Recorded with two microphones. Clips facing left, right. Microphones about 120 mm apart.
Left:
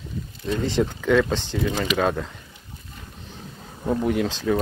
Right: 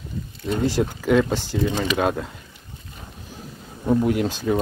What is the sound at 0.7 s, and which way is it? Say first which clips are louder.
Speech: even; 5° right (ahead or behind).